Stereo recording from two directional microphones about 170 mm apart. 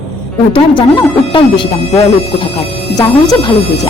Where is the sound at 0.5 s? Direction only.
30° left (ahead or behind).